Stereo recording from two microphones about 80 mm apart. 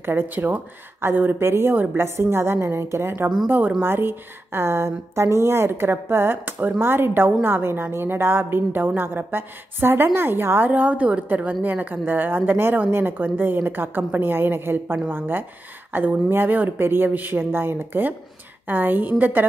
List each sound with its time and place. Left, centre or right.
0.0 s a woman's voice: right